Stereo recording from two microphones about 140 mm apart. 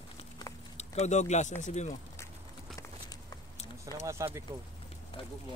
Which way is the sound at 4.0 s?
20° right (ahead or behind).